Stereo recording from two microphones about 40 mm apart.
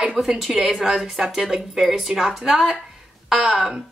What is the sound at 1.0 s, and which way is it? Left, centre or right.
Mantra, right.